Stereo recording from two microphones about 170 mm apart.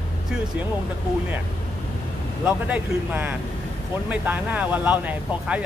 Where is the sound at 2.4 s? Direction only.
10° right (ahead or behind).